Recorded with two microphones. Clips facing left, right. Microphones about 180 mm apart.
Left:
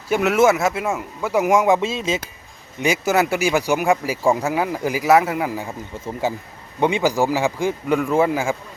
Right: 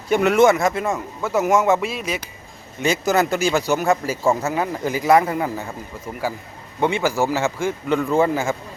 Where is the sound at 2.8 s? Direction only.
10° left (ahead or behind).